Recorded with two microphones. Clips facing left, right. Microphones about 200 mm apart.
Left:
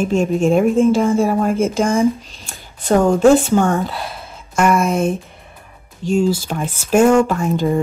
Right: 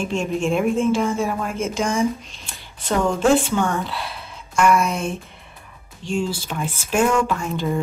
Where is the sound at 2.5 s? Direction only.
50° left (ahead or behind).